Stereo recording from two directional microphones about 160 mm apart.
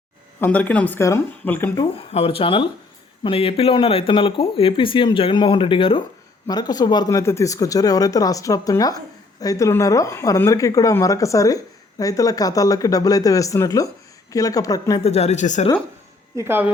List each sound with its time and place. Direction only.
0.3 s speech: 10° left (ahead or behind)
1.8 s speech: 35° left (ahead or behind)
15.0 s speech: 40° left (ahead or behind)
16.3 s speech: 15° right (ahead or behind)